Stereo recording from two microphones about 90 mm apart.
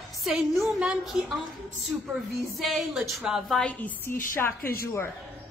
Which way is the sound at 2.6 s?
Centre (ahead or behind).